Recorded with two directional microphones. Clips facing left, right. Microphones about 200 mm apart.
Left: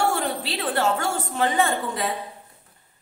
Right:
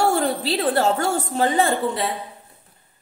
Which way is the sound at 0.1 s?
40° right (ahead or behind).